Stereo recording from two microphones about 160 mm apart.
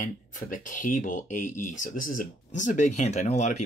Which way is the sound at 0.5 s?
55° left (ahead or behind).